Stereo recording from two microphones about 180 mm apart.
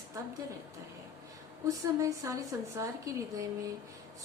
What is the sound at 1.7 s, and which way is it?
A woman's voice, 20° right (ahead or behind).